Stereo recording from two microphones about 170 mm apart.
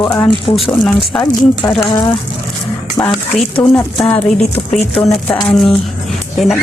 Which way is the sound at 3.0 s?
5° left (ahead or behind).